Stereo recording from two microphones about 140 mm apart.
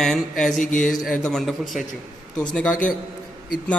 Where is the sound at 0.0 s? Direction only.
5° left (ahead or behind).